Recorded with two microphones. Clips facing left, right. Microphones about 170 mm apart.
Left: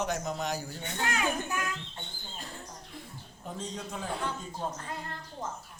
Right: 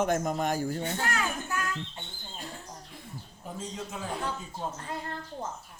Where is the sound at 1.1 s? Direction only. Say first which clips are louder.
Left 1 dB; 15° left (ahead or behind).